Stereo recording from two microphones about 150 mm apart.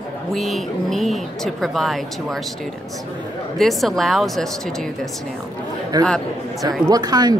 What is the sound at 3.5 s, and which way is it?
Speech, centre (ahead or behind).